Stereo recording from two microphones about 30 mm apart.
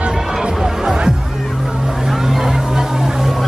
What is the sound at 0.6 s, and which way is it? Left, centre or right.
Music, centre.